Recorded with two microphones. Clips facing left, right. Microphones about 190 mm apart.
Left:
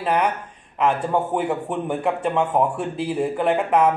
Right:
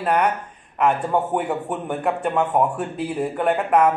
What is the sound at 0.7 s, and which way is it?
A man's voice, centre (ahead or behind).